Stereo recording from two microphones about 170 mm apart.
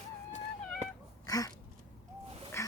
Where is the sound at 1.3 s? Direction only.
20° left (ahead or behind).